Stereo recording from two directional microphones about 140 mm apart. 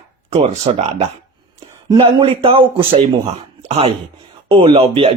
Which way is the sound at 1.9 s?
35° right (ahead or behind).